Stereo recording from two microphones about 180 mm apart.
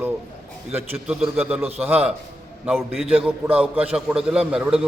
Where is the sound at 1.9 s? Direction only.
5° right (ahead or behind).